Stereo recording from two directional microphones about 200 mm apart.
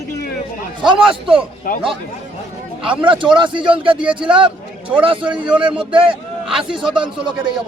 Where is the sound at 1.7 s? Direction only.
45° left (ahead or behind).